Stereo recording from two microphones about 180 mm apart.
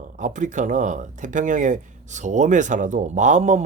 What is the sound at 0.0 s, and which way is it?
Speech, 45° right (ahead or behind).